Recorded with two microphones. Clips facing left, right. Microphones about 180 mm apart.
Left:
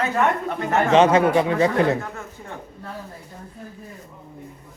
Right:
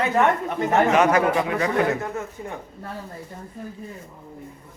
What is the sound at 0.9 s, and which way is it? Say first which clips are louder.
Speech: left 3 dB; 25° left (ahead or behind).